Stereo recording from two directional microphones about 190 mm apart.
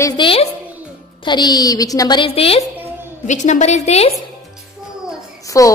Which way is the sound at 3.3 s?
40° left (ahead or behind).